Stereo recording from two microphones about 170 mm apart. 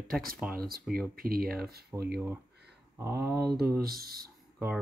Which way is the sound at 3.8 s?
60° right (ahead or behind).